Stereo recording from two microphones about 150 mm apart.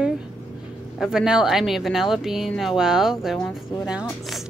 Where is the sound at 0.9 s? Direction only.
5° right (ahead or behind).